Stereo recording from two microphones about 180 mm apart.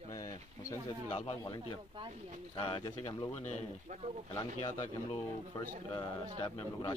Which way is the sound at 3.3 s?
40° left (ahead or behind).